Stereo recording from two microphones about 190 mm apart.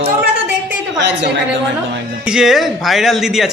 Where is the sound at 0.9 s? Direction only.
65° right (ahead or behind).